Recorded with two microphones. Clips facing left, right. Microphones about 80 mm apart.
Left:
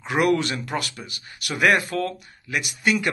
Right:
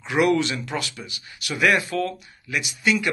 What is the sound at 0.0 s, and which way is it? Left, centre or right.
A man's voice, left.